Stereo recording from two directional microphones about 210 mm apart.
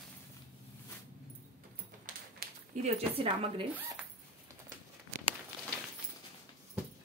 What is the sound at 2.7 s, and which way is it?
Speech, 30° right (ahead or behind).